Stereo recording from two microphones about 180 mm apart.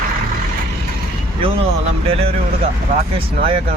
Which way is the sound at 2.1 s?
35° right (ahead or behind).